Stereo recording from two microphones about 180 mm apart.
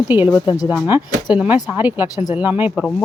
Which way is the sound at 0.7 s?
10° right (ahead or behind).